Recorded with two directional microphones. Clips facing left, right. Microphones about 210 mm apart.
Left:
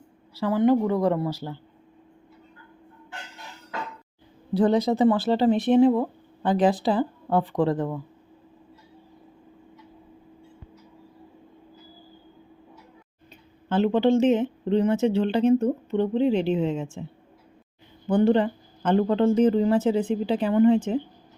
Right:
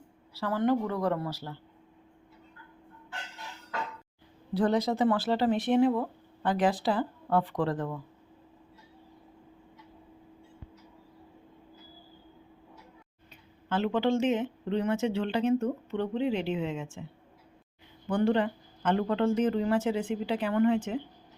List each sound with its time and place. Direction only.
0.3 s a woman's voice: 15° left (ahead or behind)
4.5 s speech: 20° left (ahead or behind)
13.7 s speech: 25° left (ahead or behind)
18.1 s speech: 25° left (ahead or behind)